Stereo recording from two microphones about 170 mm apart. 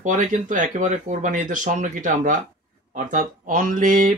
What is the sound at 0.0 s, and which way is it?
Speech, 50° right (ahead or behind).